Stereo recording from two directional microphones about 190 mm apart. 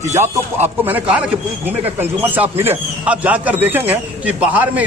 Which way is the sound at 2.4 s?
10° right (ahead or behind).